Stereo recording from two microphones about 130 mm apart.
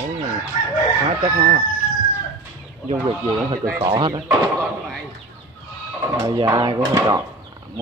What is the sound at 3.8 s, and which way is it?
Speech, 45° right (ahead or behind).